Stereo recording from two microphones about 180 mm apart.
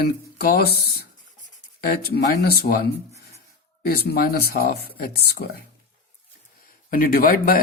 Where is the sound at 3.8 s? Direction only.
60° left (ahead or behind).